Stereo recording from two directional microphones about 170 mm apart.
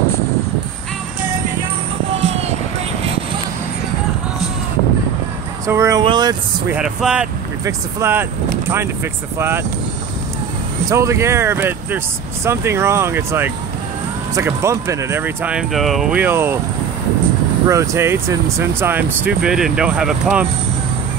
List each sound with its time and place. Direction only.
2.1 s vehicle: 40° right (ahead or behind)
5.7 s speech: 20° right (ahead or behind)
6.7 s speech: 5° right (ahead or behind)
10.9 s speech: 15° right (ahead or behind)
17.6 s speech: 15° right (ahead or behind)